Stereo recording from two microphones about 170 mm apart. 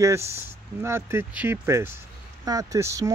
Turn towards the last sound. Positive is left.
turn(degrees=-20)  # may be behind; listen again after turning